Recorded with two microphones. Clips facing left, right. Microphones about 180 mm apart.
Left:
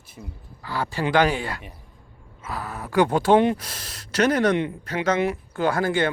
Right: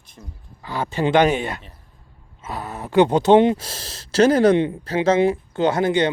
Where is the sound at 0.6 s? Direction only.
20° right (ahead or behind).